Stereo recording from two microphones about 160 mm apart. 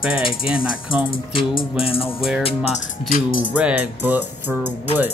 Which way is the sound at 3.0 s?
60° left (ahead or behind).